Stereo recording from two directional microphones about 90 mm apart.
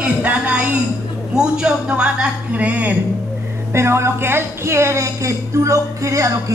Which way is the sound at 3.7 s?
30° right (ahead or behind).